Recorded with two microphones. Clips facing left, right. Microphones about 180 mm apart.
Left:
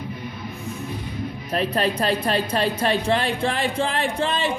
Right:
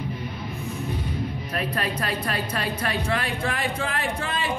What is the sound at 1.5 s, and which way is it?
Speech, 25° left (ahead or behind).